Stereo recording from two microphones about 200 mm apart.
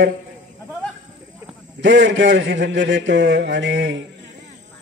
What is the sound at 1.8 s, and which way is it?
A man's voice, 65° right (ahead or behind).